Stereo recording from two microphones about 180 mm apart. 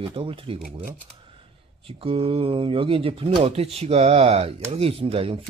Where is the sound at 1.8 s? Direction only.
30° right (ahead or behind).